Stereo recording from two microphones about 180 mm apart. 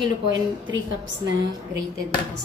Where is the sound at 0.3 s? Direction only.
90° right.